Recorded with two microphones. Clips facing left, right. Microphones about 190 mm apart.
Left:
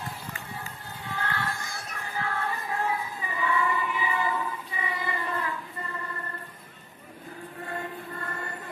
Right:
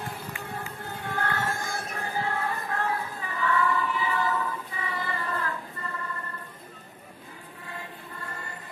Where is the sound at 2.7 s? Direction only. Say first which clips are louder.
Even; 10° left (ahead or behind).